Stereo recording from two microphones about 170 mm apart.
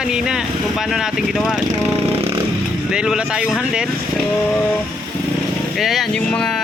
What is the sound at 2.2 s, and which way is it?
Vehicle, 35° right (ahead or behind).